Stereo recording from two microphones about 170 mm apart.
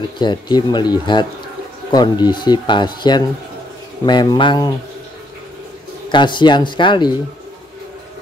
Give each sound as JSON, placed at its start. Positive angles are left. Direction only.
{"t": 0.2, "sound": "speech", "side_deg": 25}
{"t": 6.0, "sound": "speech", "side_deg": 25}